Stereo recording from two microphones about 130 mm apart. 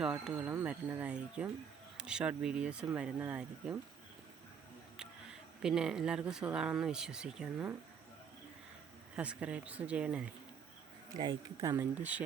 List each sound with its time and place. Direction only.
0.0 s speech: 5° right (ahead or behind)
4.9 s speech: 5° right (ahead or behind)
9.1 s speech: 10° right (ahead or behind)
11.2 s speech: 30° right (ahead or behind)
11.8 s speech: 15° right (ahead or behind)